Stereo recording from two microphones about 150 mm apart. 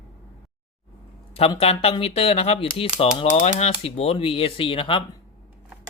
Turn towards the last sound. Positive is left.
turn(degrees=35)  # may be behind; listen again after turning